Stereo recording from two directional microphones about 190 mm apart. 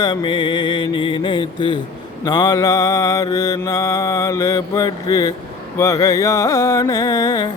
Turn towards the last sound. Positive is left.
turn(degrees=20)  # may be behind; listen again after turning